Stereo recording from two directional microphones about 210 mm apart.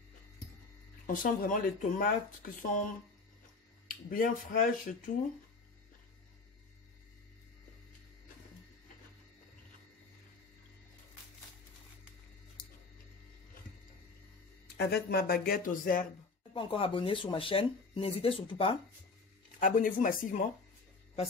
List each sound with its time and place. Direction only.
1.0 s speech: 40° left (ahead or behind)
3.8 s speech: 40° left (ahead or behind)
14.8 s speech: 50° left (ahead or behind)
16.5 s speech: 25° left (ahead or behind)
19.6 s speech: 40° left (ahead or behind)